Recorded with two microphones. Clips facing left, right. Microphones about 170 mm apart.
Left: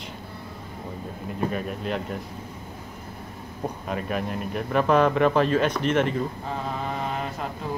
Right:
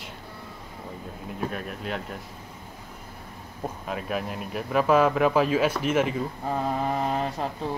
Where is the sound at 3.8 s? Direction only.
Centre (ahead or behind).